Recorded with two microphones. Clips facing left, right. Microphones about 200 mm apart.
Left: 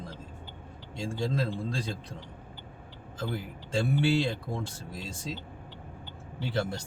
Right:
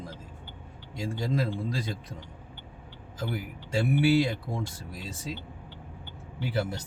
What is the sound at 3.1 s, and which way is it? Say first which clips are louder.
Speech: right 1 dB; 5° right (ahead or behind).